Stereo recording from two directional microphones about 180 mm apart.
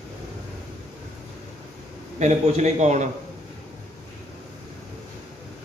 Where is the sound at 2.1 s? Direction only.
40° right (ahead or behind).